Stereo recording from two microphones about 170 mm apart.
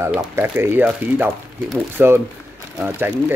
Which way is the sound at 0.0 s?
10° right (ahead or behind).